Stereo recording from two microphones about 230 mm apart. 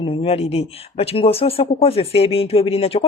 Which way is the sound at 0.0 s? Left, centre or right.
Left.